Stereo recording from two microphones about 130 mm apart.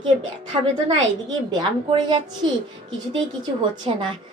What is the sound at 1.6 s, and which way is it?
Speech, 35° right (ahead or behind).